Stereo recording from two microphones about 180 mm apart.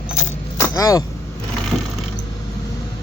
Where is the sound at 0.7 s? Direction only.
20° left (ahead or behind).